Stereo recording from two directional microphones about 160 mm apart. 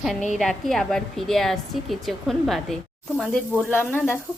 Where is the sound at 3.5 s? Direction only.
10° left (ahead or behind).